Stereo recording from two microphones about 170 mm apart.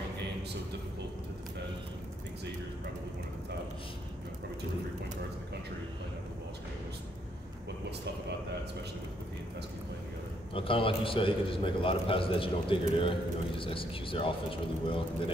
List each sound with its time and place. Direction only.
10.5 s a man's voice: 30° left (ahead or behind)